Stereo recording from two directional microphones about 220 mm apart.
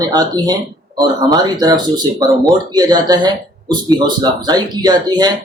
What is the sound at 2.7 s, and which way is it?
Speech, 20° right (ahead or behind).